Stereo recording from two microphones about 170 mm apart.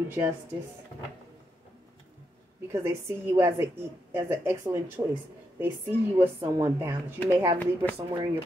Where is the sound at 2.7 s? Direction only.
15° right (ahead or behind).